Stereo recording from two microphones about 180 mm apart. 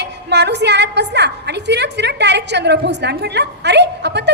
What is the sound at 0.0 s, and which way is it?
A woman's voice, 70° right (ahead or behind).